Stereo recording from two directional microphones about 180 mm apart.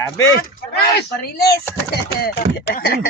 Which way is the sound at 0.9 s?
60° left (ahead or behind).